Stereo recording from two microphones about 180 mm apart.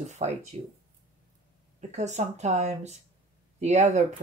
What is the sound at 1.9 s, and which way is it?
Speech, 40° right (ahead or behind).